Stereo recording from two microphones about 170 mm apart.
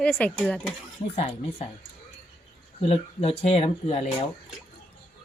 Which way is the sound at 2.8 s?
35° left (ahead or behind).